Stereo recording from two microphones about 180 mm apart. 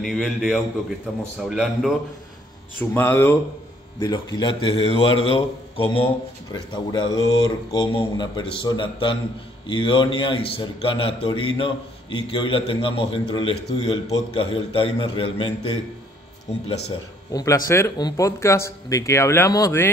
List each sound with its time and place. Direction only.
0.0 s a man's voice: centre (ahead or behind)
2.8 s a man's voice: 10° left (ahead or behind); by 15.8 s 30° left (ahead or behind)
17.3 s speech: 20° left (ahead or behind)